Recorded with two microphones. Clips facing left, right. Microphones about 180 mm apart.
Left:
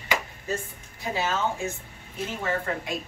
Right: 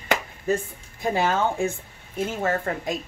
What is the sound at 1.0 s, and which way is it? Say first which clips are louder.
Speech: right 5 dB; 55° right (ahead or behind).